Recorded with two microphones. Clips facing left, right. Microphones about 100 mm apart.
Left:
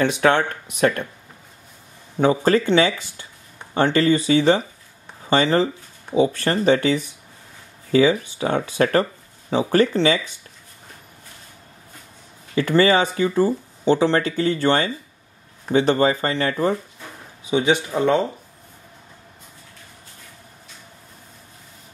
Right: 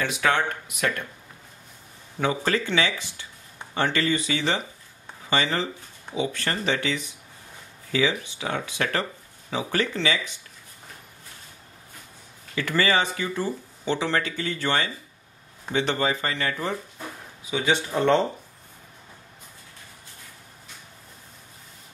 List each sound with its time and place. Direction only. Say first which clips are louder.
0.0 s speech: left 6 dB; 30° left (ahead or behind)
2.1 s speech: left 8 dB; 35° left (ahead or behind)
12.5 s speech: left 7 dB; 35° left (ahead or behind)
17.5 s a man's voice: left 5 dB; 20° left (ahead or behind)